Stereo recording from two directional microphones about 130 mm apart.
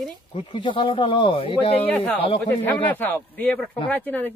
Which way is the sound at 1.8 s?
10° left (ahead or behind).